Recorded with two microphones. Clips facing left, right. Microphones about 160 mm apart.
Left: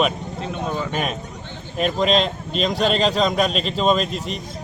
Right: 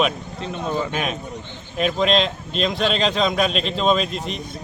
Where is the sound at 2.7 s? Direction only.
40° left (ahead or behind).